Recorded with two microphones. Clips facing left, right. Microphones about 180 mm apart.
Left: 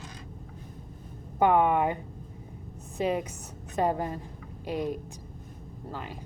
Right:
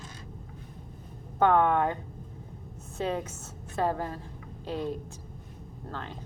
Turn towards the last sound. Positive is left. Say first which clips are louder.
# left 1 dB
turn(degrees=10)  # may be behind; listen again after turning